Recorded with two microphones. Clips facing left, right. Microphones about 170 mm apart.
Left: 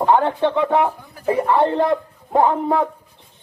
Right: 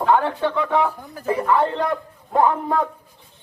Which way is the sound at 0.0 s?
20° left (ahead or behind).